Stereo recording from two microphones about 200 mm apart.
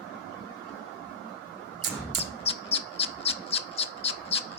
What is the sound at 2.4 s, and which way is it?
Bird, 30° left (ahead or behind).